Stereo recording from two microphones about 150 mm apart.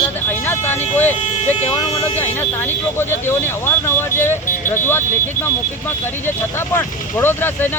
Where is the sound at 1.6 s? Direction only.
40° left (ahead or behind).